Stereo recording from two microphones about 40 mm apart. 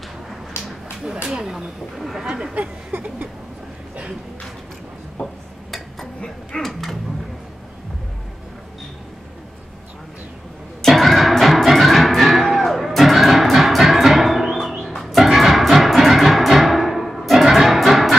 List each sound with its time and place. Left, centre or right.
1.0 s speech: right
2.0 s speech: centre
2.2 s speech: centre
6.2 s dog: centre
10.8 s music: centre